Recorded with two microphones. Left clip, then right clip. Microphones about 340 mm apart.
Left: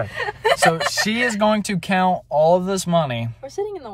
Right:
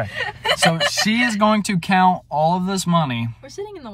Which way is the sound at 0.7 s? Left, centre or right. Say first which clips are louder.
Right 1 dB; centre.